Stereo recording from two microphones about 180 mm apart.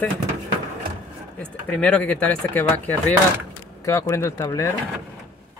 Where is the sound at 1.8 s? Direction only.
5° left (ahead or behind).